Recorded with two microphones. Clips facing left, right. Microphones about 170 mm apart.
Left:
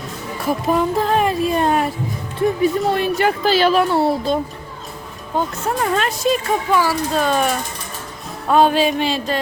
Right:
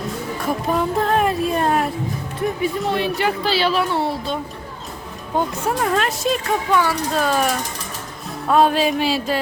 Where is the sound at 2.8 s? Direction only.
45° left (ahead or behind).